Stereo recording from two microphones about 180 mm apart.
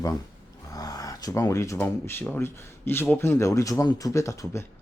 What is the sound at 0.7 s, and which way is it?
Speech, 20° left (ahead or behind).